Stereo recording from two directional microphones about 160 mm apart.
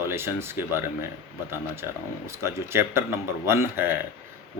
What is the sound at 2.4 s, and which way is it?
Speech, 15° right (ahead or behind).